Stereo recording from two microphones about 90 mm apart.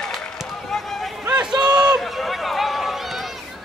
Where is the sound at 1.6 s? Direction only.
55° right (ahead or behind).